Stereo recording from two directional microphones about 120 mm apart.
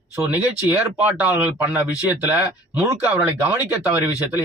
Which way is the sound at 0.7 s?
15° right (ahead or behind).